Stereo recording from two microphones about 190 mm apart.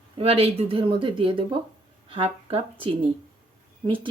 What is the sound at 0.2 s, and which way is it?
Speech, 30° right (ahead or behind).